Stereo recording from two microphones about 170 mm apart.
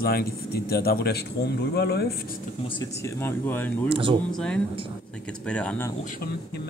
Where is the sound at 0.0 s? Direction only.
65° left (ahead or behind).